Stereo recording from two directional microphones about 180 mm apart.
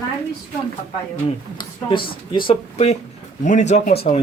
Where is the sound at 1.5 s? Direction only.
25° left (ahead or behind).